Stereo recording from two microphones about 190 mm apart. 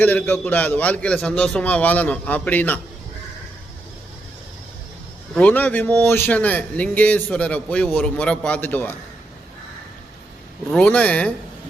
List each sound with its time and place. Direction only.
0.0 s a man's voice: 10° left (ahead or behind)
5.3 s a man's voice: 5° left (ahead or behind)
10.7 s a man's voice: 5° left (ahead or behind)